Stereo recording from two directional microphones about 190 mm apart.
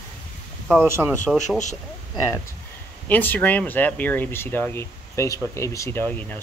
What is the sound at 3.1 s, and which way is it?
Speech, 10° left (ahead or behind).